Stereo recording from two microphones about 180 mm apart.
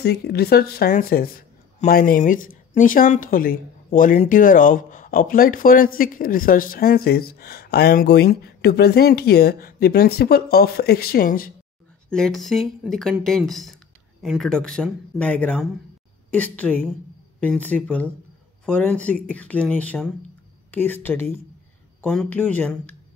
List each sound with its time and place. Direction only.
0.0 s speech: 65° left (ahead or behind)
12.1 s speech: centre (ahead or behind)